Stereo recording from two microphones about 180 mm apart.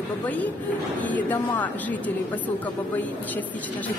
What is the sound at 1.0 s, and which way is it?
A woman's voice, 10° left (ahead or behind).